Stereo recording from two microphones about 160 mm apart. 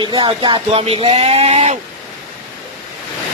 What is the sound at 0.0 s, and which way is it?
Speech, 30° right (ahead or behind).